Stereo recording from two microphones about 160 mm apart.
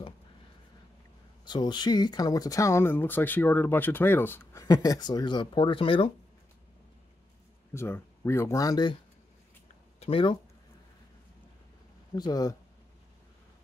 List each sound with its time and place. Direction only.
1.4 s speech: 30° left (ahead or behind)
7.7 s speech: 15° left (ahead or behind)
9.9 s speech: 35° left (ahead or behind)
12.2 s speech: 25° left (ahead or behind)